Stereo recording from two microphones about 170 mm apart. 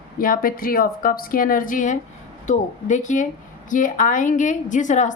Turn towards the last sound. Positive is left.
turn(degrees=45)  # may be behind; listen again after turning